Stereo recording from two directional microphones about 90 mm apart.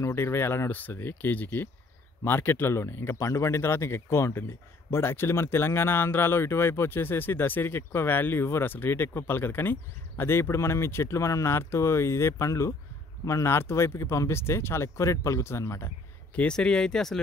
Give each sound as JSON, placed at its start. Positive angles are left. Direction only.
{"t": 0.0, "sound": "speech", "side_deg": 30}
{"t": 16.3, "sound": "speech", "side_deg": 10}